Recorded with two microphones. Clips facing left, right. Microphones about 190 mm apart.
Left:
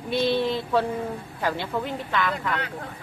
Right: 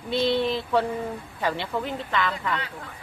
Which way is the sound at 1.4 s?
5° left (ahead or behind).